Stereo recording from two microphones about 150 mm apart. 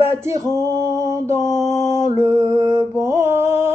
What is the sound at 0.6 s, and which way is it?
Male singing, 20° right (ahead or behind).